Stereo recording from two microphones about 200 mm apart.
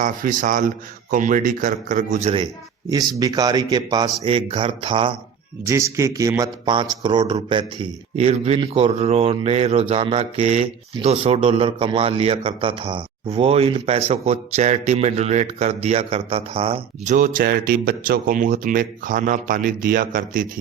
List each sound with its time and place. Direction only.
0.0 s speech: 40° right (ahead or behind)
3.2 s speech: 20° right (ahead or behind)
5.6 s speech: 15° right (ahead or behind)
17.2 s speech: 40° right (ahead or behind)